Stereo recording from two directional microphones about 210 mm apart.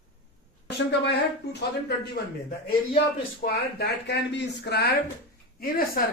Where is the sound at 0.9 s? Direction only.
55° left (ahead or behind).